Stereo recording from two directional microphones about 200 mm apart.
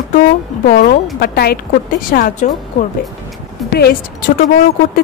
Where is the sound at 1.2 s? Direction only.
50° left (ahead or behind).